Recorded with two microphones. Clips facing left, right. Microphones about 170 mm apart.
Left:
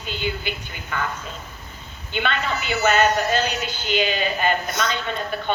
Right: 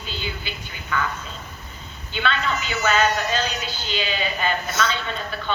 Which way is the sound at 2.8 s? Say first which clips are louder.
Left 2 dB; 45° left (ahead or behind).